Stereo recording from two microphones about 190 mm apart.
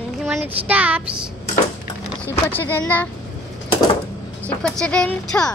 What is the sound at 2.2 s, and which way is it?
Speech, 10° left (ahead or behind).